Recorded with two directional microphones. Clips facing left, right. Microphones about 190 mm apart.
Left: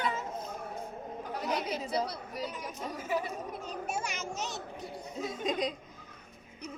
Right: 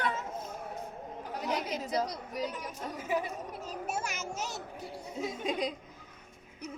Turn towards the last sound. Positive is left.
turn(degrees=-5)  # may be behind; listen again after turning